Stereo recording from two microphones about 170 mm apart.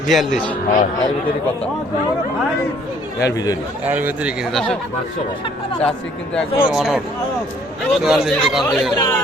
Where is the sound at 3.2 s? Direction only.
20° left (ahead or behind).